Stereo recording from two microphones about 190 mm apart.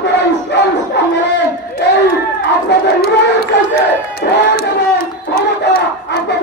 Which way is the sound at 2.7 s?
65° left (ahead or behind).